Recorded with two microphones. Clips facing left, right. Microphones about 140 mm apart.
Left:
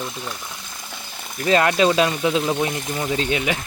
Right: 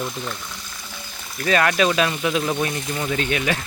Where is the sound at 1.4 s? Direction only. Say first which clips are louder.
Left 2 dB; 25° left (ahead or behind).